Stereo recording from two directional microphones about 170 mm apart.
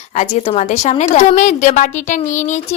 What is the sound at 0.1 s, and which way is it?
A woman's voice, 40° left (ahead or behind).